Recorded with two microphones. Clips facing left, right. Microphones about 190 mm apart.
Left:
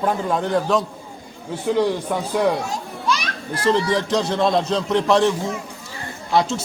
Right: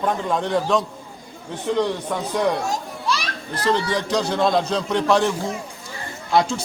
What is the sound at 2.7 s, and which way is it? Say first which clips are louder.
Children playing: left 1 dB; 30° right (ahead or behind).